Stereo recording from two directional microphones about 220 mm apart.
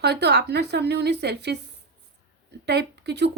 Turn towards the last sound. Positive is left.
turn(degrees=-50)  # may be behind; listen again after turning